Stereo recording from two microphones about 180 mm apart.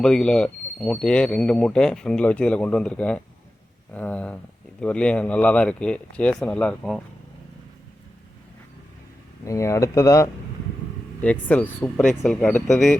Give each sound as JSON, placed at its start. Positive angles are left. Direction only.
{"t": 0.0, "sound": "speech", "side_deg": 5}
{"t": 9.4, "sound": "speech", "side_deg": 15}